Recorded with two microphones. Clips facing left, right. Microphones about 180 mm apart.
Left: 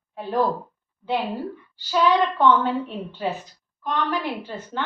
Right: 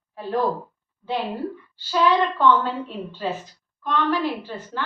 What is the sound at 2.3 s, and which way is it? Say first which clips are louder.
A woman's voice: left 1 dB; 20° left (ahead or behind).